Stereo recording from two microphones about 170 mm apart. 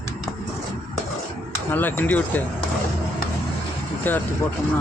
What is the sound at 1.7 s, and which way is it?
Speech, 10° left (ahead or behind).